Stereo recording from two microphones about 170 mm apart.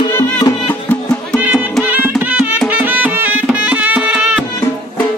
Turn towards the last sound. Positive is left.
turn(degrees=-5)  # may be behind; listen again after turning